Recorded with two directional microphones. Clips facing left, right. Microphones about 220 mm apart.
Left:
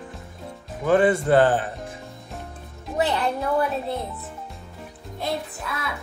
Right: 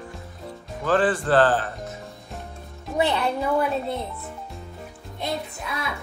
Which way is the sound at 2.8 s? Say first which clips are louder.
Even; centre (ahead or behind).